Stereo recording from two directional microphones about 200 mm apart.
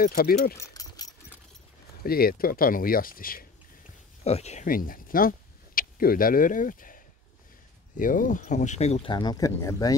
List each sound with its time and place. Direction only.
0.0 s speech: 50° left (ahead or behind)
0.6 s a sound: 20° left (ahead or behind)
2.0 s speech: 50° left (ahead or behind)
4.2 s speech: 30° left (ahead or behind)
8.0 s speech: 40° left (ahead or behind); by 9.9 s 15° left (ahead or behind)